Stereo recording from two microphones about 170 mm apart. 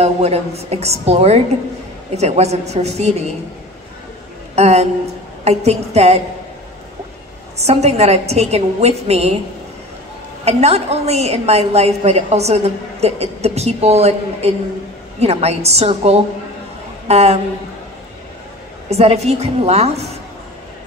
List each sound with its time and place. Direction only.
0.0 s a woman's voice: 40° right (ahead or behind)
4.6 s a woman's voice: 40° right (ahead or behind)
7.5 s a woman's voice: 40° right (ahead or behind)
10.4 s a woman's voice: 40° right (ahead or behind)
18.9 s a woman's voice: 40° right (ahead or behind)